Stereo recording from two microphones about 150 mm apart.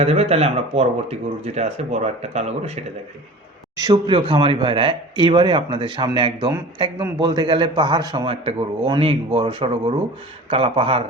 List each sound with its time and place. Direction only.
0.0 s speech: 45° right (ahead or behind)
3.8 s a man's voice: 25° right (ahead or behind)
8.3 s speech: 40° right (ahead or behind)